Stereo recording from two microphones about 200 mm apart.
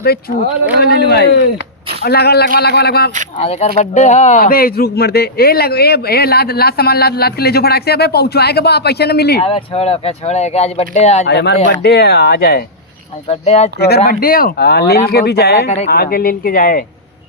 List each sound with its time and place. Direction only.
0.0 s a man's voice: 50° left (ahead or behind)
3.3 s speech: 30° left (ahead or behind); by 9.4 s 55° left (ahead or behind)
9.4 s speech: 25° left (ahead or behind)
11.3 s a man's voice: 60° left (ahead or behind)
13.2 s speech: 30° left (ahead or behind)
13.7 s speech: 55° left (ahead or behind)